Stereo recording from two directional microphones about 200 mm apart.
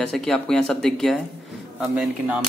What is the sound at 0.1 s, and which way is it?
Speech, centre (ahead or behind).